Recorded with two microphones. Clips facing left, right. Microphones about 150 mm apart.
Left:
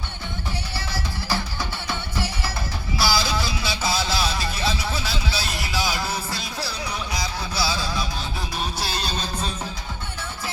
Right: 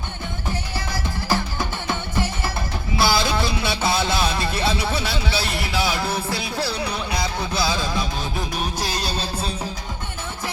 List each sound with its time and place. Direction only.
0.9 s music: 50° right (ahead or behind)
3.0 s a sound: 55° right (ahead or behind)
8.9 s music: 40° right (ahead or behind)